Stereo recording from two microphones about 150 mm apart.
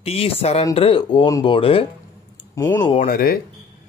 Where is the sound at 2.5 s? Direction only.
15° left (ahead or behind).